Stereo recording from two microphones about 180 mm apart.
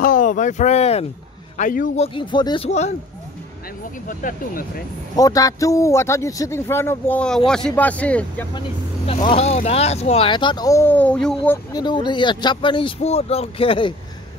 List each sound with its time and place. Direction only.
0.0 s speech: 50° left (ahead or behind)
1.6 s speech: 50° left (ahead or behind)
2.0 s speech: 25° left (ahead or behind)
4.1 s speech: 50° left (ahead or behind)
5.1 s a man's voice: 20° left (ahead or behind)
8.5 s speech: 30° left (ahead or behind); by 11.6 s 5° left (ahead or behind)
11.7 s speech: 25° left (ahead or behind)